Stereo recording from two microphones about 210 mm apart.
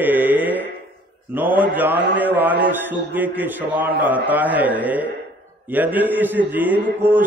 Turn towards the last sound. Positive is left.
turn(degrees=-10)  # may be behind; listen again after turning